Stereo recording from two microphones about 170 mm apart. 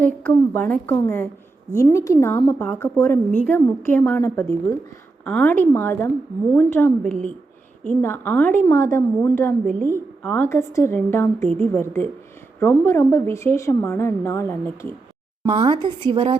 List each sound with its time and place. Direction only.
0.2 s a woman's voice: 10° left (ahead or behind)
11.4 s speech: 40° right (ahead or behind)
11.7 s a woman's voice: 10° left (ahead or behind)
15.4 s speech: 30° right (ahead or behind)